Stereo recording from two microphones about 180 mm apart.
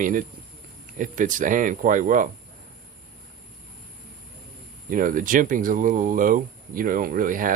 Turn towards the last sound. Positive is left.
turn(degrees=-50)  # may be behind; listen again after turning